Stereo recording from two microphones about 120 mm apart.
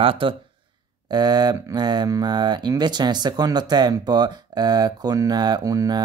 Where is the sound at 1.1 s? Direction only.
35° right (ahead or behind).